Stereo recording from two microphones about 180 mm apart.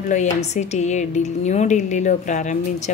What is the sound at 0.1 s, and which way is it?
A woman's voice, 40° left (ahead or behind).